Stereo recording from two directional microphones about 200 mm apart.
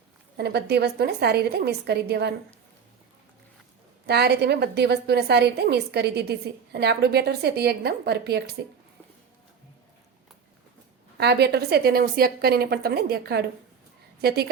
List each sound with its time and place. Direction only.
0.3 s a woman's voice: 55° right (ahead or behind)
4.0 s a woman's voice: 55° right (ahead or behind)
11.2 s a woman's voice: 55° right (ahead or behind)